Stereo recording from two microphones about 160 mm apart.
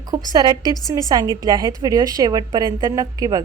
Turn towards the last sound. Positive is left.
turn(degrees=-20)  # may be behind; listen again after turning